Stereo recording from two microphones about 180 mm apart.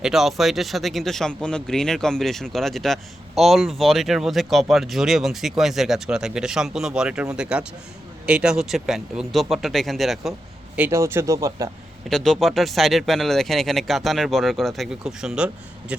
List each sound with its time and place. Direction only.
0.0 s speech: centre (ahead or behind)
10.8 s speech: 15° right (ahead or behind)
12.0 s speech: centre (ahead or behind)